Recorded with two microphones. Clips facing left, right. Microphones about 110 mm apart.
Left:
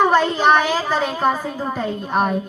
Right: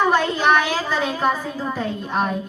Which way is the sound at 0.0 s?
35° left (ahead or behind).